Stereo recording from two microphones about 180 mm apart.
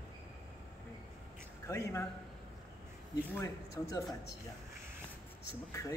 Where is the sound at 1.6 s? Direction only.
15° left (ahead or behind).